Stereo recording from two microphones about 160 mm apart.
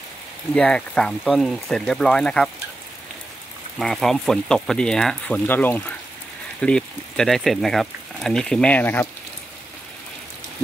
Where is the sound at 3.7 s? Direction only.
Centre (ahead or behind).